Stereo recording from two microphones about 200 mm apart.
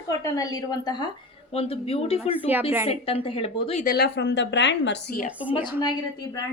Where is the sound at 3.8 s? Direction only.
55° left (ahead or behind).